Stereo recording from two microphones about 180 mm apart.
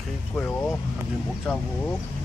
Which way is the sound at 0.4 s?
10° left (ahead or behind).